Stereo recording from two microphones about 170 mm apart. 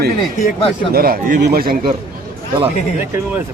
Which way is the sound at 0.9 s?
60° right (ahead or behind).